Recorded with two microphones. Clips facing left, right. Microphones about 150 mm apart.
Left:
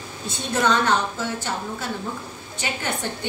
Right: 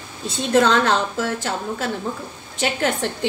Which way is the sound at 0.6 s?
90° right.